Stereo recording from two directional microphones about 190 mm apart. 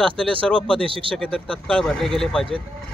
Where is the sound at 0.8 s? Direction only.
30° right (ahead or behind).